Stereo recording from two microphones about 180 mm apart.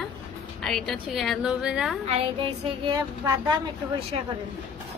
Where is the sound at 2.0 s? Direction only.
30° right (ahead or behind).